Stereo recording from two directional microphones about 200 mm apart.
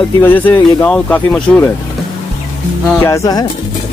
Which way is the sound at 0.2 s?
10° left (ahead or behind).